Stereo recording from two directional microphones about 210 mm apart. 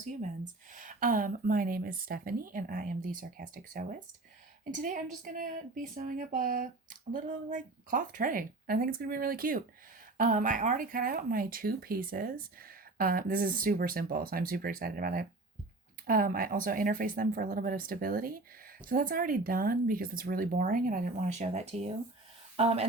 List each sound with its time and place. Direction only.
0.7 s a woman's voice: 40° right (ahead or behind)